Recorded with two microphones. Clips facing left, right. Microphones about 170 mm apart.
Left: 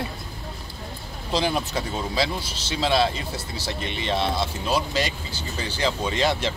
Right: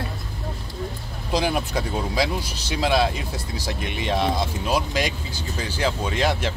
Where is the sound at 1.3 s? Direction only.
10° right (ahead or behind).